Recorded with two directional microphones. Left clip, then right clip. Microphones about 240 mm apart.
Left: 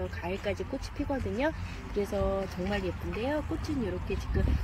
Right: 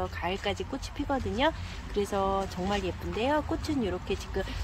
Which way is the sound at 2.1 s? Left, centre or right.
Centre.